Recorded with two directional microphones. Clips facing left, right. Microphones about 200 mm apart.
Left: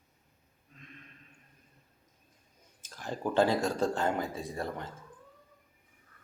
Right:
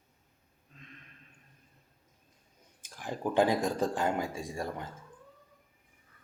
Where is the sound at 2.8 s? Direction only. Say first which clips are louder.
Even; 15° right (ahead or behind).